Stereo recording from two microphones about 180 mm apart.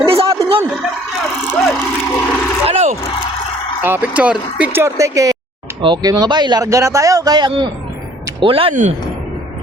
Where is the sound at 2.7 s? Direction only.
35° right (ahead or behind).